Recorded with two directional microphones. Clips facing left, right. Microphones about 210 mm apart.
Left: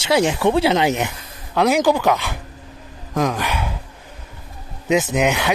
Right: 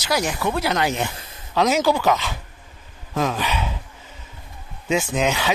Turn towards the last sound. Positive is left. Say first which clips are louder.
# left 3 dB
turn(degrees=15)  # may be behind; listen again after turning